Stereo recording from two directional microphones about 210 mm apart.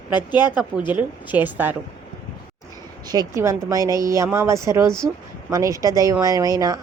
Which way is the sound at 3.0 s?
15° right (ahead or behind).